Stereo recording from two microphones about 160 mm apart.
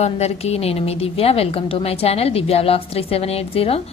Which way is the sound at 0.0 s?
40° left (ahead or behind).